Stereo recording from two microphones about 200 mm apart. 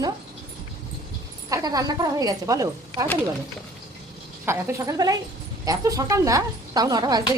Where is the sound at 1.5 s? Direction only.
15° right (ahead or behind).